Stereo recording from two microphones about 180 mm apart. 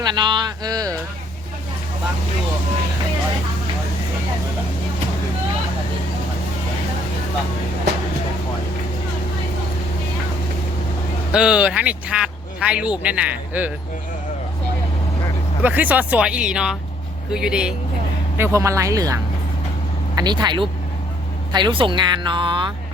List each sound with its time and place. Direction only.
0.0 s speech: 25° right (ahead or behind)
11.3 s speech: 5° right (ahead or behind)
15.6 s speech: 10° right (ahead or behind)
18.3 s speech: 15° right (ahead or behind)